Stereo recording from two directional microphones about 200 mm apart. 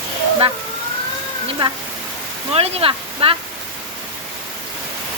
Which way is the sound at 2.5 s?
30° right (ahead or behind).